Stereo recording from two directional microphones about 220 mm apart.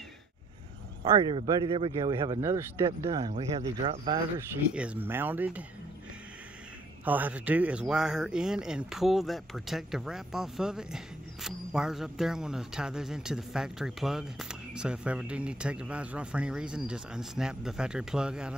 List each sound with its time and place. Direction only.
1.0 s speech: 25° right (ahead or behind)
4.4 s speech: 5° right (ahead or behind)
7.1 s speech: 10° right (ahead or behind)